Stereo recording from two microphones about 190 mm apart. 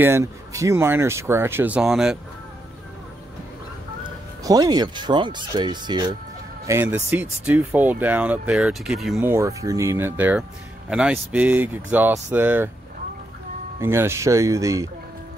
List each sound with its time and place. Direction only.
0.0 s speech: 15° right (ahead or behind)
4.0 s speech: 20° right (ahead or behind)
6.7 s speech: 10° right (ahead or behind)
9.2 s speech: 15° right (ahead or behind)
13.7 s speech: 15° right (ahead or behind)